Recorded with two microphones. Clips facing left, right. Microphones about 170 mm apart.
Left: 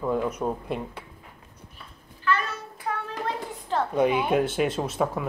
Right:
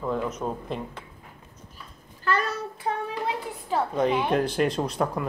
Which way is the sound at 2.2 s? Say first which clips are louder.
Right 1 dB; 40° right (ahead or behind).